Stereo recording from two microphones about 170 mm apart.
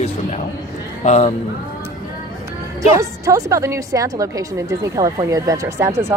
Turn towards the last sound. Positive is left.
turn(degrees=-15)  # may be behind; listen again after turning